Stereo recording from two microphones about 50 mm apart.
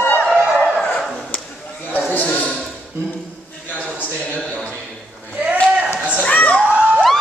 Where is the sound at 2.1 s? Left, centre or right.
Left.